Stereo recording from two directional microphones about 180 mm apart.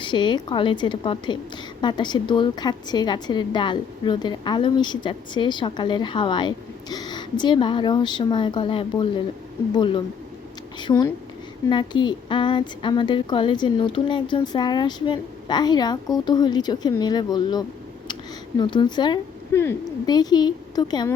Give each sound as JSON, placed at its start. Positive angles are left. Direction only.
{"t": 0.0, "sound": "speech", "side_deg": 25}